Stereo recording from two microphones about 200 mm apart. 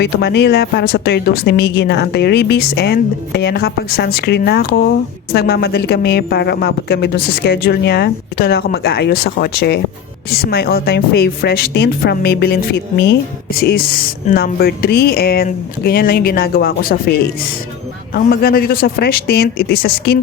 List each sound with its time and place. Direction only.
0.0 s a woman's voice: 55° left (ahead or behind)